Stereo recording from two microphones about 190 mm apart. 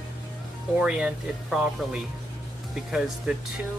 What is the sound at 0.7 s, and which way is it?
Speech, 5° right (ahead or behind).